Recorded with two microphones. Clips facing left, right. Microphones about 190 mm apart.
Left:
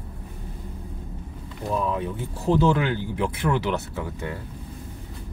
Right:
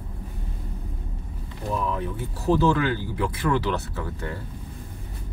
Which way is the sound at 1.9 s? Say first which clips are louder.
Left 1 dB; 20° left (ahead or behind).